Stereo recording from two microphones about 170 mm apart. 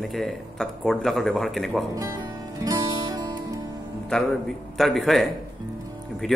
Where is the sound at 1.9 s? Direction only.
20° right (ahead or behind).